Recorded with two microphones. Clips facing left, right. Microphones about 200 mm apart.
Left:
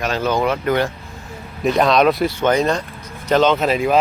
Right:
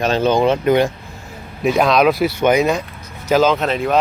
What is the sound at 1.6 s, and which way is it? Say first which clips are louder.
Speech: right 1 dB; centre (ahead or behind).